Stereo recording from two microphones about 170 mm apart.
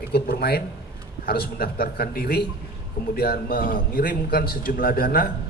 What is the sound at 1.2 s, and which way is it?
A man's voice, 60° left (ahead or behind).